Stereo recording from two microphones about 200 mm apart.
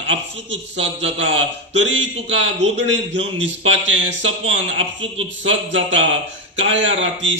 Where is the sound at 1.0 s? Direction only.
70° right (ahead or behind).